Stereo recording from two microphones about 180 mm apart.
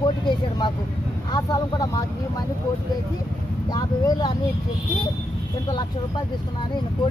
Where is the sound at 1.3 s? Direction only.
20° left (ahead or behind).